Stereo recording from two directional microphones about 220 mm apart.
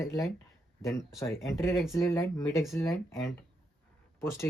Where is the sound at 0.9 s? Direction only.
15° left (ahead or behind).